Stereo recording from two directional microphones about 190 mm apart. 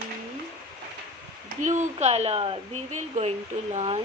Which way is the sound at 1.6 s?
40° right (ahead or behind).